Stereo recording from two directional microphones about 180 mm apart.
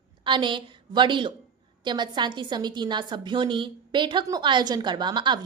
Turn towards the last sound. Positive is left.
turn(degrees=-25)  # may be behind; listen again after turning